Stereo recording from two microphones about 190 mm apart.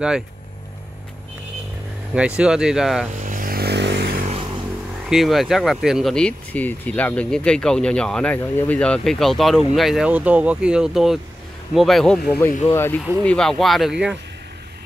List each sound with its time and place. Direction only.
2.1 s speech: 5° right (ahead or behind)
3.2 s vehicle: 45° right (ahead or behind)
5.1 s speech: centre (ahead or behind)